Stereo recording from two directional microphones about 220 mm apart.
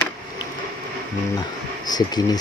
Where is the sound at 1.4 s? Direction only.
20° left (ahead or behind).